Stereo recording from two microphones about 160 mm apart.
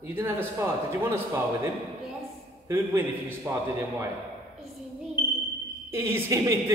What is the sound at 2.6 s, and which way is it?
A man's voice, 15° right (ahead or behind).